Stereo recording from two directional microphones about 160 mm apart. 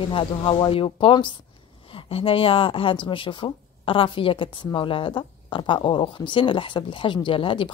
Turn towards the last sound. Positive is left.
turn(degrees=30)  # may be behind; listen again after turning